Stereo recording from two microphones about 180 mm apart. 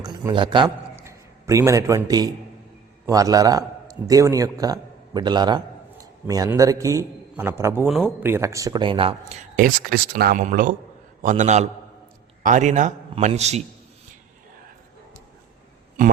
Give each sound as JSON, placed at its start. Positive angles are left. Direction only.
{"t": 0.0, "sound": "speech", "side_deg": -25}
{"t": 0.9, "sound": "a man's voice", "side_deg": -15}
{"t": 7.9, "sound": "speech", "side_deg": 0}
{"t": 8.2, "sound": "speech", "side_deg": -15}
{"t": 9.6, "sound": "a man's voice", "side_deg": -55}